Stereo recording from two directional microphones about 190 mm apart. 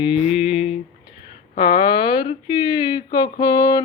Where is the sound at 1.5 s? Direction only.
25° left (ahead or behind).